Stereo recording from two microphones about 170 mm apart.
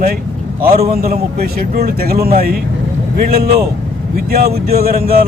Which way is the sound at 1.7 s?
65° right (ahead or behind).